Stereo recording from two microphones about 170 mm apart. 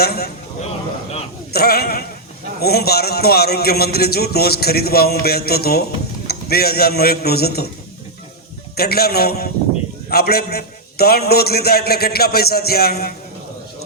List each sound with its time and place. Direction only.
0.0 s a man's voice: 65° left (ahead or behind)
1.5 s a man's voice: 65° left (ahead or behind)
8.7 s a man's voice: 65° left (ahead or behind)